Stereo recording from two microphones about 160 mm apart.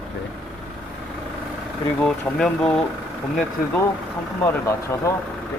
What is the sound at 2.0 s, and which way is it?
Speech, 5° left (ahead or behind).